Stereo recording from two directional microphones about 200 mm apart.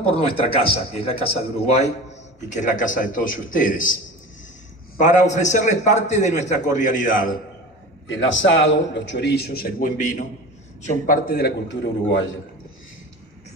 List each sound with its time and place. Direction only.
0.3 s a man's voice: 25° left (ahead or behind)
2.5 s a man's voice: 40° left (ahead or behind)
8.1 s a man's voice: 70° left (ahead or behind)